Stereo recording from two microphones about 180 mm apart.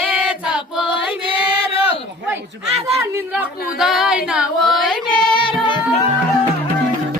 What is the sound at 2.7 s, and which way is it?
Speech, 35° right (ahead or behind).